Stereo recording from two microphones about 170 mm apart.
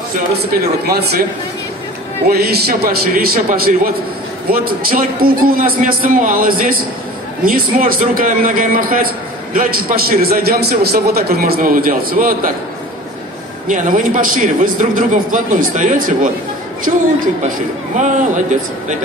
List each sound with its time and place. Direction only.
0.5 s a man's voice: 65° right (ahead or behind)
2.2 s a man's voice: 65° right (ahead or behind)
13.7 s a man's voice: 50° right (ahead or behind)
17.9 s a man's voice: 45° right (ahead or behind)